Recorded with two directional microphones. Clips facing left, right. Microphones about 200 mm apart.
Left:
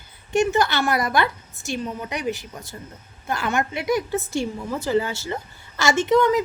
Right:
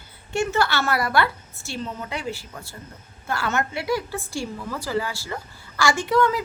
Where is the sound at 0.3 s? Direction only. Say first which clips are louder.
Left 3 dB; 15° left (ahead or behind).